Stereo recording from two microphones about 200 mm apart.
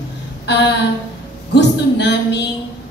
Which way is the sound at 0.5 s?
60° left (ahead or behind).